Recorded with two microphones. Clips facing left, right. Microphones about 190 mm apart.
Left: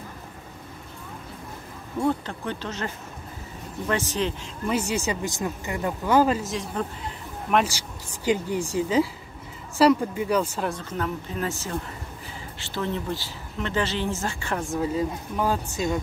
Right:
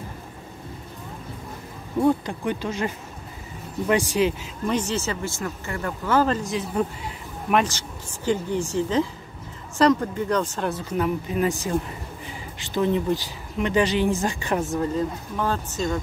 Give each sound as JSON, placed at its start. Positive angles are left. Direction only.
{"t": 2.0, "sound": "speech", "side_deg": -15}
{"t": 4.6, "sound": "speech", "side_deg": 10}
{"t": 8.3, "sound": "speech", "side_deg": 10}
{"t": 10.7, "sound": "speech", "side_deg": -10}
{"t": 14.7, "sound": "speech", "side_deg": 5}